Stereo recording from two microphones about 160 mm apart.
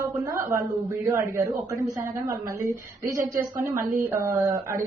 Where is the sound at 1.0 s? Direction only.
15° right (ahead or behind).